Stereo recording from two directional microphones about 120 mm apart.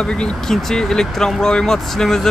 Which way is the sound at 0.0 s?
5° left (ahead or behind).